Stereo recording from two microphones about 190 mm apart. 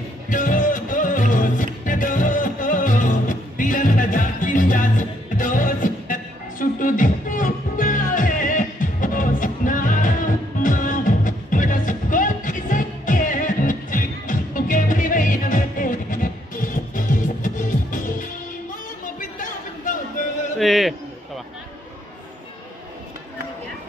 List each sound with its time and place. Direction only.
0.3 s music: 45° left (ahead or behind)
20.5 s music: centre (ahead or behind)